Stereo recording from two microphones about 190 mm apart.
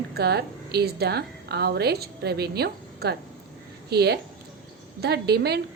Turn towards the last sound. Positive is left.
turn(degrees=-55)  # may be behind; listen again after turning